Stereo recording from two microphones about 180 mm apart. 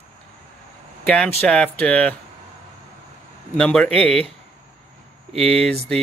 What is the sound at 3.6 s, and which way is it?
Speech, 5° left (ahead or behind).